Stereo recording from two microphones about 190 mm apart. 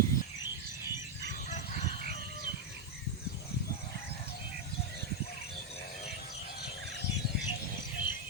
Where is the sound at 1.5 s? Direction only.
40° left (ahead or behind).